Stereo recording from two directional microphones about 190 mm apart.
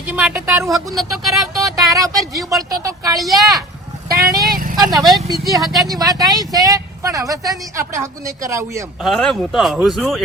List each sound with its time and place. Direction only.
0.1 s speech: 5° right (ahead or behind)
1.6 s a woman's voice: 20° right (ahead or behind)
3.2 s speech: centre (ahead or behind)
4.1 s a woman's voice: 20° right (ahead or behind)
9.0 s speech: centre (ahead or behind)